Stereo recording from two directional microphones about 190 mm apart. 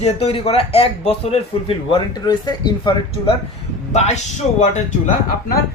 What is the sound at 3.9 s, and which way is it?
Speech, 35° left (ahead or behind).